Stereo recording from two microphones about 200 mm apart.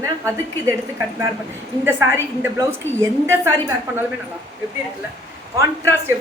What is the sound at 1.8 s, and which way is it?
A woman's voice, 10° right (ahead or behind).